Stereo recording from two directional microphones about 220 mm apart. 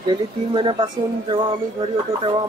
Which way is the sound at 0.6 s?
20° right (ahead or behind).